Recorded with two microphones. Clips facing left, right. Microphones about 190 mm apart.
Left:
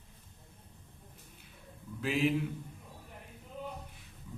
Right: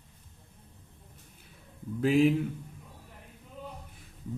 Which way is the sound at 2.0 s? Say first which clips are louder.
Right 8 dB; 50° right (ahead or behind).